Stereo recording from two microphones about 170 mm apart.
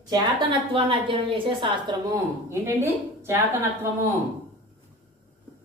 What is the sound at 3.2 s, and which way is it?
Speech, 15° right (ahead or behind).